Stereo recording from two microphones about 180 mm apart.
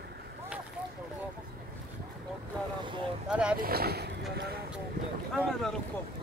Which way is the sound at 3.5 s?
55° right (ahead or behind).